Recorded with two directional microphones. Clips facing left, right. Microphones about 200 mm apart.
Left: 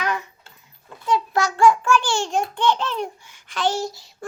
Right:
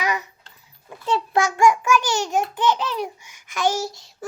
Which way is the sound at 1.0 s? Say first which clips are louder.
Left 1 dB; 25° right (ahead or behind).